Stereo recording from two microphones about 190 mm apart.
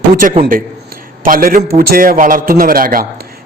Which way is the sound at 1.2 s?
45° right (ahead or behind).